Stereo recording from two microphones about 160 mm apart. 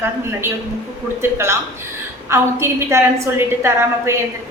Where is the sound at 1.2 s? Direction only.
15° right (ahead or behind).